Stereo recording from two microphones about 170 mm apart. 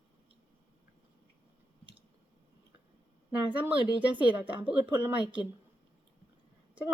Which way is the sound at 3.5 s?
10° right (ahead or behind).